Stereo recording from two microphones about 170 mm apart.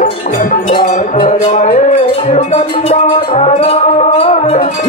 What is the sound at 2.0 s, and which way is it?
Music, 35° left (ahead or behind).